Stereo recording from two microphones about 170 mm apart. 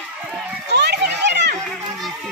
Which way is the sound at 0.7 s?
90° right.